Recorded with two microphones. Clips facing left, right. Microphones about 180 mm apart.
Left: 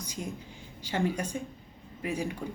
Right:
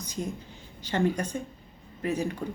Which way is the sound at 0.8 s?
10° left (ahead or behind).